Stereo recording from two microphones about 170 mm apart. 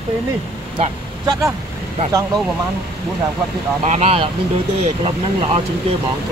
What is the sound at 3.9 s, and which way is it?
Speech, 40° right (ahead or behind).